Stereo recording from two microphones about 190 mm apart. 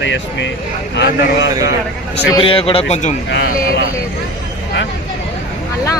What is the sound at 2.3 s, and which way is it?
Speech, 25° left (ahead or behind).